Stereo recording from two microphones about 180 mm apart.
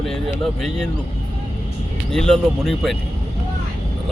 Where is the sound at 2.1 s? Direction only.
5° left (ahead or behind).